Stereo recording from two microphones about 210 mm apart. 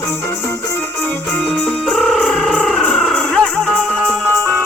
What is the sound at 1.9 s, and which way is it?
Music, centre (ahead or behind).